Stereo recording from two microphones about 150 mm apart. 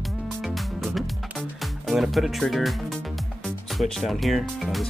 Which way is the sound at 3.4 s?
Centre (ahead or behind).